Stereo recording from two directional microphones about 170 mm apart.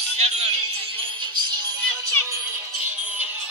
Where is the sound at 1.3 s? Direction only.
25° right (ahead or behind).